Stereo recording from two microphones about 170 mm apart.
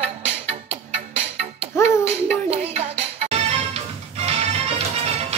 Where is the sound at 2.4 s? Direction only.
40° right (ahead or behind).